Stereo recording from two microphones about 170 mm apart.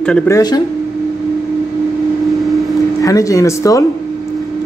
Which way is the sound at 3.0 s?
20° left (ahead or behind).